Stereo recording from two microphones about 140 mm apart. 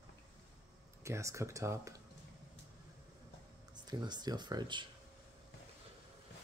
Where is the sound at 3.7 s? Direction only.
30° right (ahead or behind).